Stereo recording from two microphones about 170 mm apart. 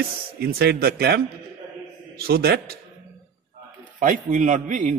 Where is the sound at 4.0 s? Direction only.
50° right (ahead or behind).